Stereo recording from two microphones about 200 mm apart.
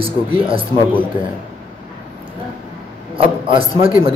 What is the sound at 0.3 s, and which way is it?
Speech, 25° right (ahead or behind).